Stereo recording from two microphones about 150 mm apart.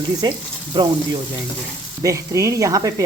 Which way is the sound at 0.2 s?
30° right (ahead or behind).